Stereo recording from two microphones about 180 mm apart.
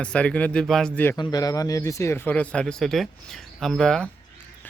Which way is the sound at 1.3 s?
20° left (ahead or behind).